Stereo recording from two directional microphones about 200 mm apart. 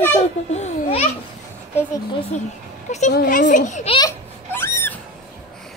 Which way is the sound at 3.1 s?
45° left (ahead or behind).